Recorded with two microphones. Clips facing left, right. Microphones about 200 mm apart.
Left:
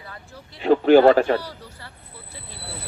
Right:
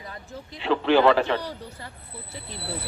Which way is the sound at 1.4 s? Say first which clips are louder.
Right 3 dB; 20° right (ahead or behind).